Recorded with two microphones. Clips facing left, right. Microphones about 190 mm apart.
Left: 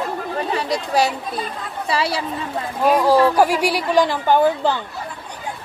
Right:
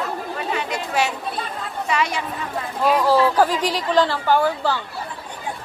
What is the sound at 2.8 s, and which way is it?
Speech, 15° left (ahead or behind).